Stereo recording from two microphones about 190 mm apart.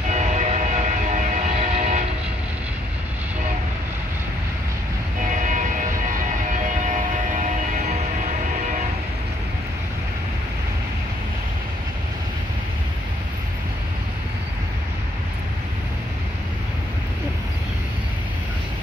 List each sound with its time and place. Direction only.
0.1 s train: 40° right (ahead or behind)
5.2 s vehicle: 40° right (ahead or behind)
7.4 s music: 40° right (ahead or behind)